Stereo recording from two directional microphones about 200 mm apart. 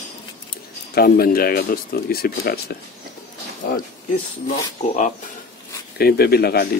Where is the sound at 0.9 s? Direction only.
50° left (ahead or behind).